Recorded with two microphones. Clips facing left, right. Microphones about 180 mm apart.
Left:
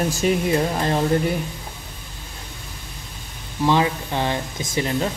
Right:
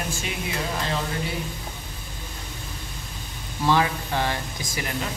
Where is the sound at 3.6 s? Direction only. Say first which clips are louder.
Left 3 dB; 20° left (ahead or behind).